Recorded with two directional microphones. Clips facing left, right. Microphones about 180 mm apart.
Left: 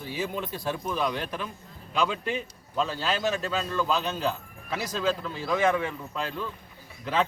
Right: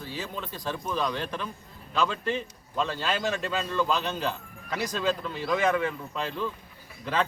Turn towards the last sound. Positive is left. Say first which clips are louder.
# left 1 dB
turn(degrees=5)  # may be behind; listen again after turning